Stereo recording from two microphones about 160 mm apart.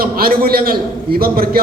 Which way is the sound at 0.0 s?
70° right (ahead or behind).